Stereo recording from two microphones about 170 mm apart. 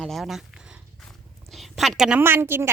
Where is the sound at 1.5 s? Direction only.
Centre (ahead or behind).